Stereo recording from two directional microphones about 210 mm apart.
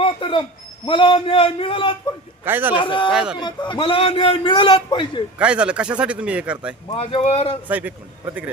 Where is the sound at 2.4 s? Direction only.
10° right (ahead or behind).